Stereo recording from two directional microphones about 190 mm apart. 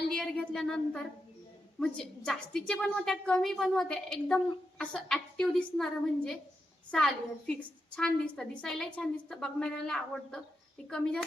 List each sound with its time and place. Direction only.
0.1 s a woman's voice: 5° left (ahead or behind)